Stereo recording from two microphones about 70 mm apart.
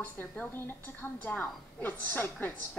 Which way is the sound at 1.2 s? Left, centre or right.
Left.